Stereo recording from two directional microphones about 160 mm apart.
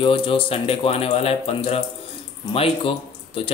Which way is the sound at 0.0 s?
35° left (ahead or behind).